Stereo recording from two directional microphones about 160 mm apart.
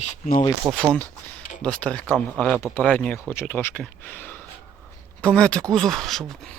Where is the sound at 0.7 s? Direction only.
5° left (ahead or behind).